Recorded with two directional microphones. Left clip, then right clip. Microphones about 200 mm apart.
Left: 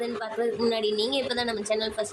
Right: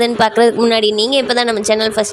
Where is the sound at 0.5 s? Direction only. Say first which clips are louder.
Right 12 dB; 40° right (ahead or behind).